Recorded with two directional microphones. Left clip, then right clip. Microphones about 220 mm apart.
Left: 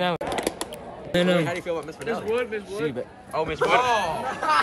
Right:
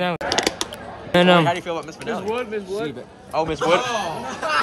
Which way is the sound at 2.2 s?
30° right (ahead or behind).